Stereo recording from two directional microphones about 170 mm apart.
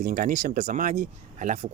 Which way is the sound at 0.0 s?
55° right (ahead or behind).